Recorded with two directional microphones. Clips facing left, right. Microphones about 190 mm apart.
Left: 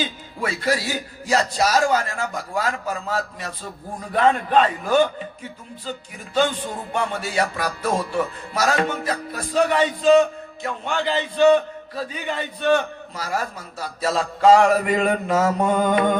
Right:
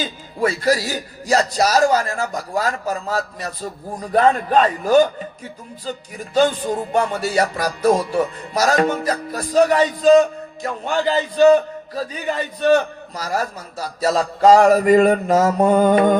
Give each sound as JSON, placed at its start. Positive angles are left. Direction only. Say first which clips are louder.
{"t": 0.0, "sound": "music", "louder": "right 5 dB", "side_deg": -40}
{"t": 6.3, "sound": "music", "louder": "right 5 dB", "side_deg": -40}